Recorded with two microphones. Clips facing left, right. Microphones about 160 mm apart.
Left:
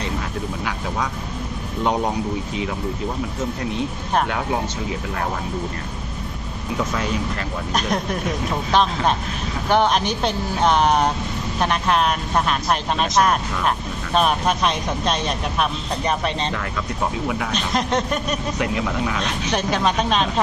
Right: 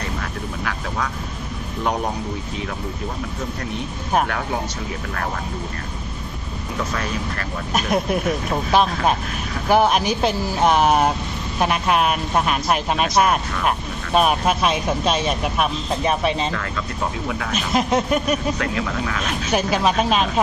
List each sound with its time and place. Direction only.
6.9 s speech: 20° left (ahead or behind)
7.7 s speech: 5° right (ahead or behind)
9.6 s speech: 5° right (ahead or behind)
18.6 s speech: 20° left (ahead or behind)
19.2 s speech: 5° right (ahead or behind)